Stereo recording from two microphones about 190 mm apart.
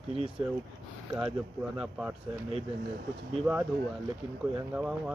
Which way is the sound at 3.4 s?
5° right (ahead or behind).